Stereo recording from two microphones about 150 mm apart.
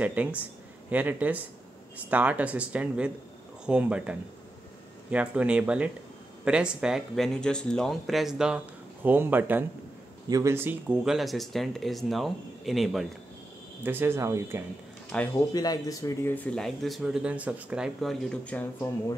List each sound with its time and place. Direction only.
0.0 s speech: 10° right (ahead or behind)
13.8 s speech: 15° right (ahead or behind)
15.1 s speech: 5° left (ahead or behind)
15.5 s speech: 25° left (ahead or behind); by 18.1 s 5° right (ahead or behind)
18.3 s speech: 10° left (ahead or behind)